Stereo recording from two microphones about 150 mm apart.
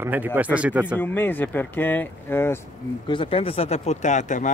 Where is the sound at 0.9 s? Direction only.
15° left (ahead or behind).